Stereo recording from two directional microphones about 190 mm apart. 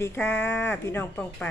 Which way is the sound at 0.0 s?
10° left (ahead or behind).